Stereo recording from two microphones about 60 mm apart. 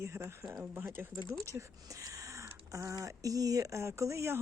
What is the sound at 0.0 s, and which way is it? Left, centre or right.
Speech, right.